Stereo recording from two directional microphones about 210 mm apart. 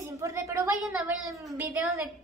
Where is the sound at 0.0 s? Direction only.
15° right (ahead or behind).